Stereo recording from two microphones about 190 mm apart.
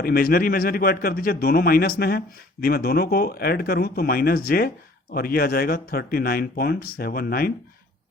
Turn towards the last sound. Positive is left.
turn(degrees=50)  # may be behind; listen again after turning